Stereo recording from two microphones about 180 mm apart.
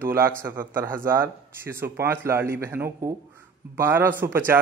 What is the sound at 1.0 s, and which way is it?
Speech, 15° right (ahead or behind).